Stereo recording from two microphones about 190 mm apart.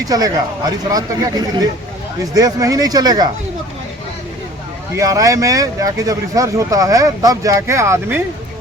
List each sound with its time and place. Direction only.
0.0 s speech: 20° right (ahead or behind)
4.9 s speech: 15° right (ahead or behind)